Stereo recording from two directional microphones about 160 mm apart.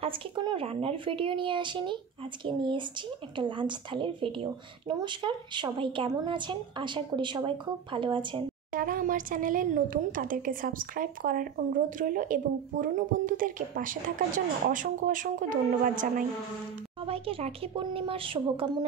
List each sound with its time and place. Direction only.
0.0 s speech: 30° right (ahead or behind)
8.7 s speech: 60° right (ahead or behind)
17.0 s speech: 35° right (ahead or behind)